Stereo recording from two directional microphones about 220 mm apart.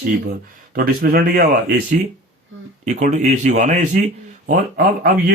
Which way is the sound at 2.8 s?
35° right (ahead or behind).